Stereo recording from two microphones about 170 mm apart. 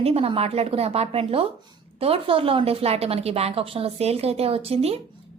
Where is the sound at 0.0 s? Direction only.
35° right (ahead or behind).